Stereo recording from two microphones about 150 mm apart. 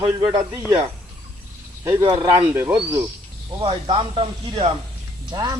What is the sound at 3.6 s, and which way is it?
Speech, 35° right (ahead or behind).